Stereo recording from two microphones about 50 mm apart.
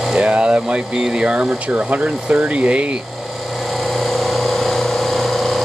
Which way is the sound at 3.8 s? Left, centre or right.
Centre.